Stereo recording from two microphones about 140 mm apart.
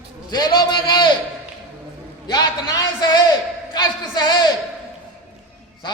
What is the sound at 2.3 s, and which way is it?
A man's voice, 30° left (ahead or behind).